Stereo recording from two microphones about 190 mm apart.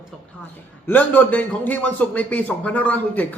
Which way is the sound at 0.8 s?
10° left (ahead or behind).